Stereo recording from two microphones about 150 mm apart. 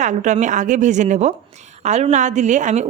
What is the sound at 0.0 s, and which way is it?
A woman's voice, 55° right (ahead or behind).